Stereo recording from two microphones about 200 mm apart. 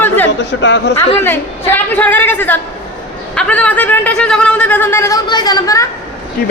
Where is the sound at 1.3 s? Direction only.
10° left (ahead or behind).